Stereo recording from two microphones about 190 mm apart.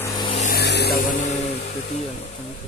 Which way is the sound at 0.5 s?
60° left (ahead or behind).